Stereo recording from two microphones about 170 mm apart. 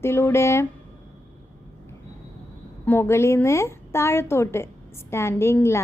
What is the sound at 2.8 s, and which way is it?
A woman's voice, 15° left (ahead or behind).